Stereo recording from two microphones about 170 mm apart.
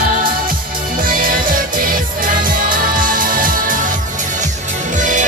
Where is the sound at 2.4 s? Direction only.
55° right (ahead or behind).